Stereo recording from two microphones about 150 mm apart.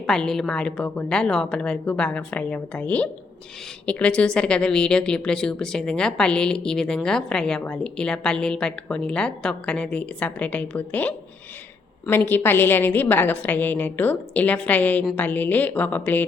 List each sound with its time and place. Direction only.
0.0 s a woman's voice: 5° left (ahead or behind)